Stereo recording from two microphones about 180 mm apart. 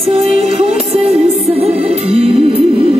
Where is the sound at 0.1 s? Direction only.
35° right (ahead or behind).